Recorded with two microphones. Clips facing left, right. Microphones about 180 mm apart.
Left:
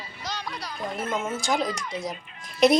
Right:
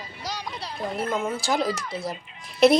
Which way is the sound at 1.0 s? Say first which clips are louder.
Right 1 dB; centre (ahead or behind).